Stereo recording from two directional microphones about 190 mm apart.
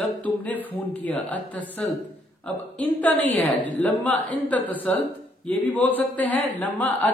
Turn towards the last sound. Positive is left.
turn(degrees=10)  # may be behind; listen again after turning